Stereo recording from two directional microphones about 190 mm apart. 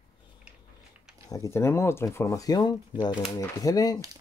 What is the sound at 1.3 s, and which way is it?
Speech, 15° left (ahead or behind).